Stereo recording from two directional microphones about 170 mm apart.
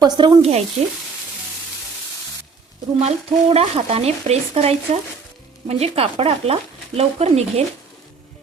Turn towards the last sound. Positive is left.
turn(degrees=-40)  # may be behind; listen again after turning